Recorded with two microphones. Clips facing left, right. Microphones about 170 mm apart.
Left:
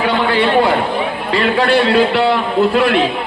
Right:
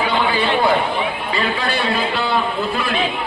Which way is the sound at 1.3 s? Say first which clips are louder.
Left 11 dB; 70° left (ahead or behind).